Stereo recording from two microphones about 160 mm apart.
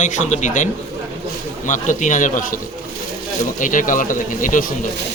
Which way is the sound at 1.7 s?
50° left (ahead or behind).